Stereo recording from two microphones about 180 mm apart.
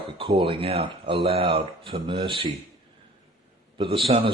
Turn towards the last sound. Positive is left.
turn(degrees=-30)  # may be behind; listen again after turning